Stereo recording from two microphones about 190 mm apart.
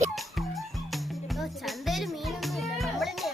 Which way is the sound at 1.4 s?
Centre (ahead or behind).